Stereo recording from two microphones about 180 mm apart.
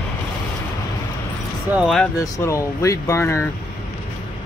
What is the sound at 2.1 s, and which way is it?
Speech, 20° left (ahead or behind).